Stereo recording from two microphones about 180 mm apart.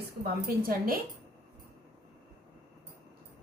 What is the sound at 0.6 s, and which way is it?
Speech, 55° right (ahead or behind).